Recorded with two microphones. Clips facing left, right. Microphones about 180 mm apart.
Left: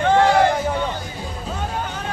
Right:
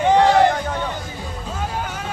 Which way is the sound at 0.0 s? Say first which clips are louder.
Right 1 dB; 15° right (ahead or behind).